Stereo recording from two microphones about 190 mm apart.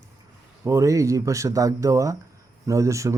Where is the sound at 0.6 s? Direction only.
15° right (ahead or behind).